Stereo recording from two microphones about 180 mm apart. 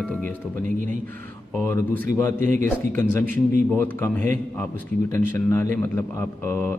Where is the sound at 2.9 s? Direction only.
10° left (ahead or behind).